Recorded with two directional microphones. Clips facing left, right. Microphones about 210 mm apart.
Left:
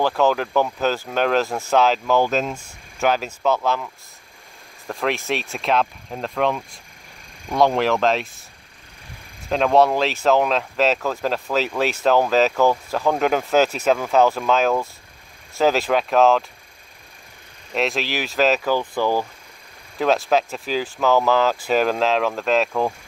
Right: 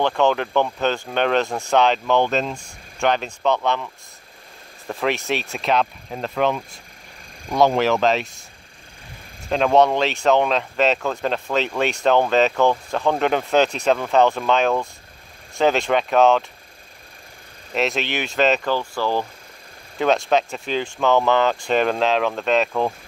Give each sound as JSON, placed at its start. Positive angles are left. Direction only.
{"t": 0.0, "sound": "speech", "side_deg": 5}
{"t": 9.5, "sound": "speech", "side_deg": 0}
{"t": 17.7, "sound": "speech", "side_deg": 0}
{"t": 18.8, "sound": "speech", "side_deg": 15}
{"t": 20.0, "sound": "speech", "side_deg": 0}